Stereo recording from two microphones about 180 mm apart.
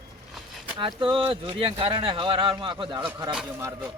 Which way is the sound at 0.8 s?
25° right (ahead or behind).